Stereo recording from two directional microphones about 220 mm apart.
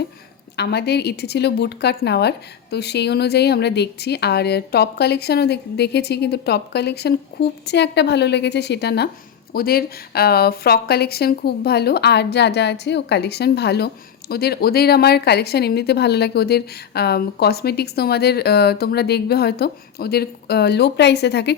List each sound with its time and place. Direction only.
0.5 s a woman's voice: 50° left (ahead or behind)